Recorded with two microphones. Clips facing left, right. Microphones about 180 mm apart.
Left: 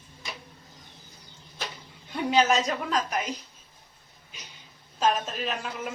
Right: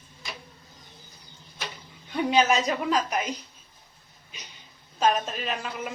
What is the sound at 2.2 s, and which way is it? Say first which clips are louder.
Speech: even; centre (ahead or behind).